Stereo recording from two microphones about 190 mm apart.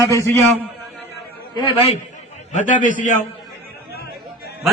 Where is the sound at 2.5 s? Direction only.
40° left (ahead or behind).